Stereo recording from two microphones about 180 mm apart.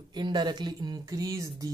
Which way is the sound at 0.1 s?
25° right (ahead or behind).